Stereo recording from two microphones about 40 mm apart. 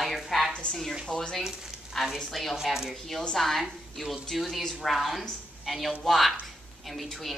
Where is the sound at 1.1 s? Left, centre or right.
Centre.